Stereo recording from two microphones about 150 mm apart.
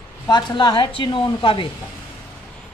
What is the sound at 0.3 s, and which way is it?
A woman's voice, 30° left (ahead or behind).